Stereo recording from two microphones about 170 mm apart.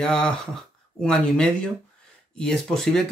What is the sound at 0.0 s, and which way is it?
Speech, 5° left (ahead or behind).